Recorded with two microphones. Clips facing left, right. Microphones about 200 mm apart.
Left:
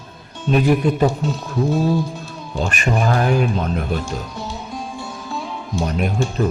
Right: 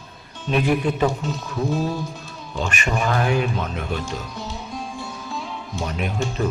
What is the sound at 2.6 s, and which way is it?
Speech, 40° left (ahead or behind).